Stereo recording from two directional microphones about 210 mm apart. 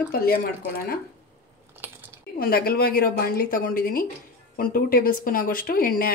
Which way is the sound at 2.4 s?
45° left (ahead or behind).